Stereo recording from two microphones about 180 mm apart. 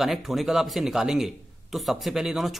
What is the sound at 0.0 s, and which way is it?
A man's voice, centre (ahead or behind).